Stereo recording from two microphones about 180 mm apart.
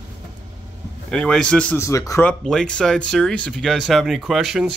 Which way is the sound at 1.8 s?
15° left (ahead or behind).